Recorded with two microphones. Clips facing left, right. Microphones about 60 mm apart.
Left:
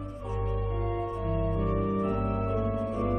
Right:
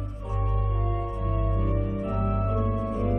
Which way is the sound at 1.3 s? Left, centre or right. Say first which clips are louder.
Left 1 dB; centre.